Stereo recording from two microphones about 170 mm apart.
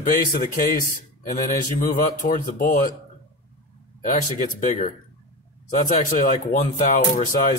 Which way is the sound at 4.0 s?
50° left (ahead or behind).